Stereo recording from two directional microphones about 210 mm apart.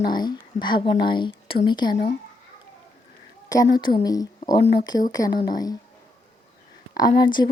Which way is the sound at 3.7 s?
20° left (ahead or behind).